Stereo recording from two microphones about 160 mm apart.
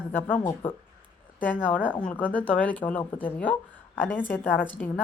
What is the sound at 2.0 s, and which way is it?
A woman's voice, 10° left (ahead or behind).